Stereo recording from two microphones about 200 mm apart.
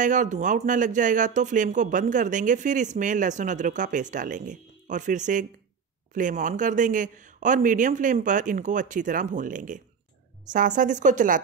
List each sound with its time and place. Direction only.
0.0 s speech: 40° right (ahead or behind)